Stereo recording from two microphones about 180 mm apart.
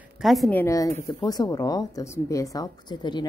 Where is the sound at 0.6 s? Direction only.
15° left (ahead or behind).